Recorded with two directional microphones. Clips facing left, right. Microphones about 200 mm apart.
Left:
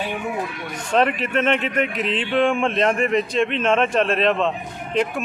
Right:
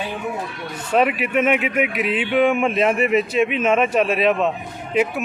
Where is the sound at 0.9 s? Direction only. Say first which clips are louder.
Right 1 dB; 10° right (ahead or behind).